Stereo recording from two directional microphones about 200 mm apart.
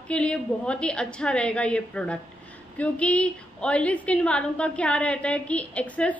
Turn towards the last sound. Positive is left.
turn(degrees=5)  # may be behind; listen again after turning